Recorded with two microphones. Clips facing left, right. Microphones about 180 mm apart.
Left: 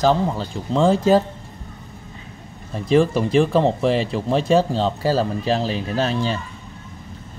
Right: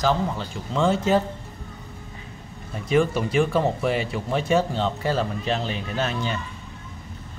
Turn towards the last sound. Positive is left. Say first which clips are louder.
# left 5 dB
turn(degrees=35)  # may be behind; listen again after turning